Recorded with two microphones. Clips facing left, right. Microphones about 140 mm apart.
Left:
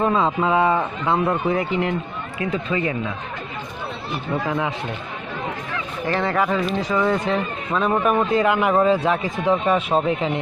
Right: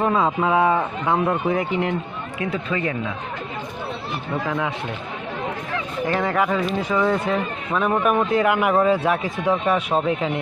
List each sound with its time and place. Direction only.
0.0 s speech: 10° right (ahead or behind)
2.7 s speech: 5° left (ahead or behind)
6.0 s speech: 5° right (ahead or behind)